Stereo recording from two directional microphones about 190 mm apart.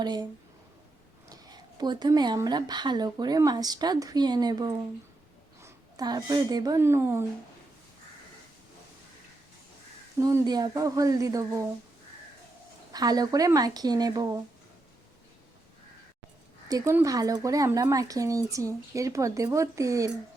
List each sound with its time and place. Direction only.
0.0 s speech: 20° right (ahead or behind)
1.3 s a woman's voice: 20° right (ahead or behind)
10.2 s speech: 15° right (ahead or behind)
12.9 s speech: 20° right (ahead or behind)
16.6 s speech: 15° right (ahead or behind)